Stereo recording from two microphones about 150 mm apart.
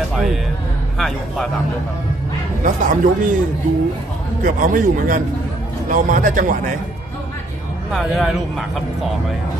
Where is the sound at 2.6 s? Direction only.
60° right (ahead or behind).